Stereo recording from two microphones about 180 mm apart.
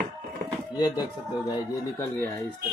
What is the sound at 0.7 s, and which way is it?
Speech, 25° left (ahead or behind).